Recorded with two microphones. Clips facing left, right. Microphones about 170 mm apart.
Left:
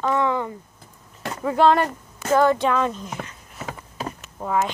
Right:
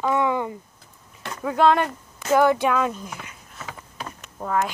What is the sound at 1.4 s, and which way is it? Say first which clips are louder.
Speech: left 1 dB; centre (ahead or behind).